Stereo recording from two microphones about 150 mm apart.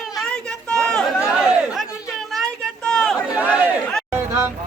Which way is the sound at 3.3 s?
10° right (ahead or behind).